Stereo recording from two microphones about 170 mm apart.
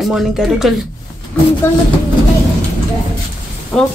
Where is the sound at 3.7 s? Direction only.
5° left (ahead or behind).